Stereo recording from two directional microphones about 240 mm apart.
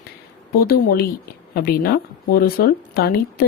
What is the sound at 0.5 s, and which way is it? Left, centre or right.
Speech, left.